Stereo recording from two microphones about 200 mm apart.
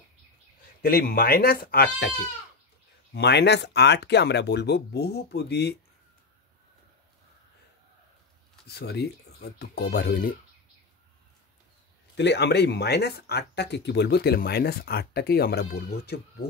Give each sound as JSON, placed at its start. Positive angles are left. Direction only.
{"t": 0.8, "sound": "speech", "side_deg": 45}
{"t": 3.1, "sound": "speech", "side_deg": 55}
{"t": 8.6, "sound": "speech", "side_deg": 55}
{"t": 12.2, "sound": "speech", "side_deg": 55}